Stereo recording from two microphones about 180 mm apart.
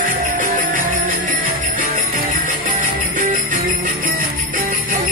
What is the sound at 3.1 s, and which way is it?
Jingle bell, 45° right (ahead or behind).